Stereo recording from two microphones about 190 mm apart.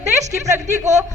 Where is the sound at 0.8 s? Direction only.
40° right (ahead or behind).